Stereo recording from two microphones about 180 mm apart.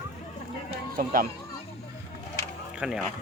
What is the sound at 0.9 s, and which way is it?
Speech, 50° right (ahead or behind).